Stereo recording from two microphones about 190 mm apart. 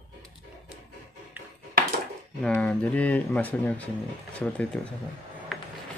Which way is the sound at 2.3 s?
5° left (ahead or behind).